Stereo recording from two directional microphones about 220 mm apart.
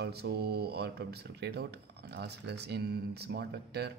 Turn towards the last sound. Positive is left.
turn(degrees=-50)  # may be behind; listen again after turning